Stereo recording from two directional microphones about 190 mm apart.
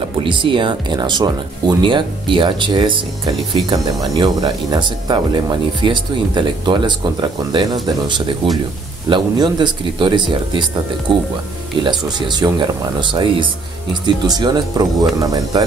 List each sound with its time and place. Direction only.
0.2 s speech: 25° right (ahead or behind)